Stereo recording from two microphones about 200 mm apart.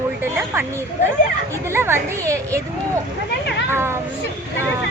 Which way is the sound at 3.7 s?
10° right (ahead or behind).